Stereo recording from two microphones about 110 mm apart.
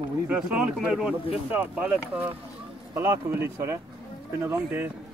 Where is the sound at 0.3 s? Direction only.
5° right (ahead or behind).